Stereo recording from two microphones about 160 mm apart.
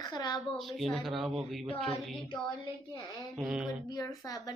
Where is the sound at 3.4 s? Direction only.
5° right (ahead or behind).